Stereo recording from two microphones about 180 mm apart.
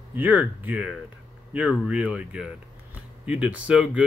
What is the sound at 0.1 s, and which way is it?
Speech, 10° right (ahead or behind).